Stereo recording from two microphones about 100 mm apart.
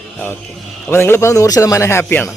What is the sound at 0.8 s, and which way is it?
A man's voice, 20° left (ahead or behind).